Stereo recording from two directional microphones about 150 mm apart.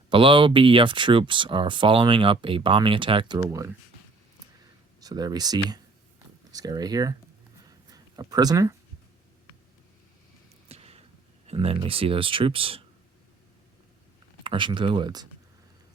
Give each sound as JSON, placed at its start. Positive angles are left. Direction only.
{"t": 0.1, "sound": "speech", "side_deg": -35}
{"t": 4.9, "sound": "speech", "side_deg": -25}
{"t": 7.6, "sound": "a sound", "side_deg": -25}
{"t": 10.7, "sound": "a sound", "side_deg": -40}
{"t": 11.4, "sound": "speech", "side_deg": -40}
{"t": 14.4, "sound": "speech", "side_deg": -35}